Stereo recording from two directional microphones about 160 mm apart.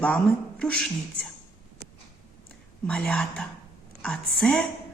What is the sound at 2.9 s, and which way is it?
Speech, 5° left (ahead or behind).